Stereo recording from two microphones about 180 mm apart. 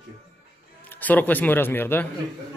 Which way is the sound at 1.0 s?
10° left (ahead or behind).